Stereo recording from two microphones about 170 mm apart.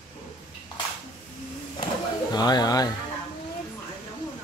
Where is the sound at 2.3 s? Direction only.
25° left (ahead or behind).